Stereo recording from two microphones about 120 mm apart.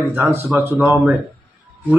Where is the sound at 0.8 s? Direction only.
15° right (ahead or behind).